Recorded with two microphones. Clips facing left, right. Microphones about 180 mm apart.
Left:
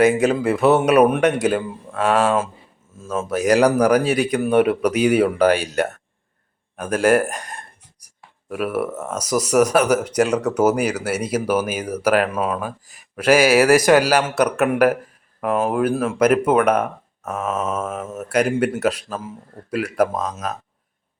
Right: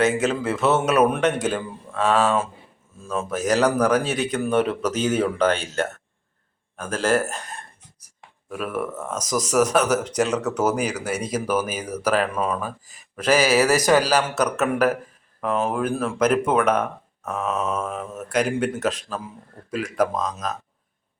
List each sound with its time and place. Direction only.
0.0 s speech: 10° left (ahead or behind)
4.8 s speech: 65° left (ahead or behind)
5.0 s speech: 10° left (ahead or behind)